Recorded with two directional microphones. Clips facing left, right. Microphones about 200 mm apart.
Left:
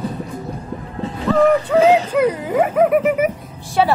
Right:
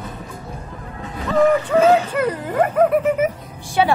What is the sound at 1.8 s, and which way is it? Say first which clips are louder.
Speech: left 1 dB; 35° left (ahead or behind).